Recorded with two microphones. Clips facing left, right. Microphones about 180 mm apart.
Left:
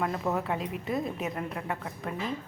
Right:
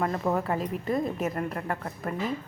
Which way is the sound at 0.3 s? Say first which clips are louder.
Right 3 dB; centre (ahead or behind).